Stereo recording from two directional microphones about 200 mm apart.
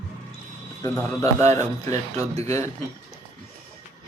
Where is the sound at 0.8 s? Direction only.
15° left (ahead or behind).